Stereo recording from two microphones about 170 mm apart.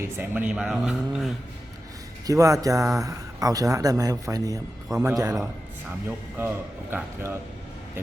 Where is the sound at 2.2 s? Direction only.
20° right (ahead or behind).